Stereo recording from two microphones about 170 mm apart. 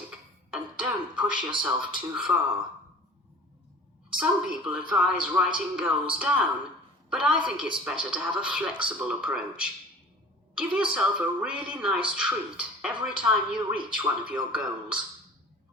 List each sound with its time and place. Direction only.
0.5 s music: 5° right (ahead or behind)
1.4 s speech: 25° right (ahead or behind)
2.1 s a woman's voice: 5° right (ahead or behind)
4.2 s a woman's voice: 5° right (ahead or behind)